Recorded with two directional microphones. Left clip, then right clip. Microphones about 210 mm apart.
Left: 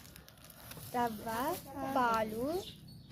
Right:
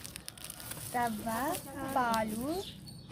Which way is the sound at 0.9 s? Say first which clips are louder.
Right 2 dB; 30° left (ahead or behind).